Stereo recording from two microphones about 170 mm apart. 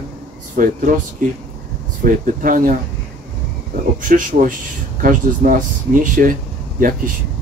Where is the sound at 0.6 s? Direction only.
50° right (ahead or behind).